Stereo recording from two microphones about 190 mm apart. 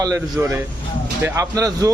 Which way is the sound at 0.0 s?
15° right (ahead or behind).